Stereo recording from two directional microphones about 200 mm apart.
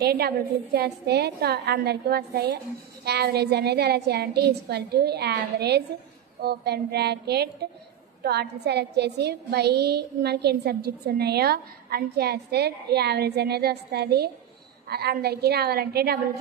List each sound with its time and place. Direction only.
0.0 s a woman's voice: 50° right (ahead or behind)